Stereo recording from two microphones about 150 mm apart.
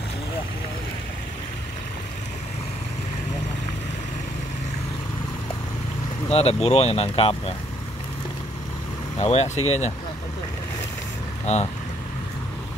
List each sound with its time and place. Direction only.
6.3 s speech: 45° left (ahead or behind)
9.2 s speech: 45° left (ahead or behind)
11.4 s speech: 45° left (ahead or behind)